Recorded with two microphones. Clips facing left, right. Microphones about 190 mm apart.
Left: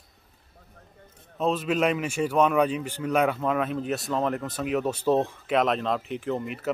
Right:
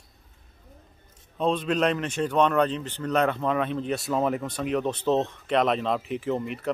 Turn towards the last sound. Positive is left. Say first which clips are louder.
# right 1 dB
turn(degrees=0)  # may be behind; listen again after turning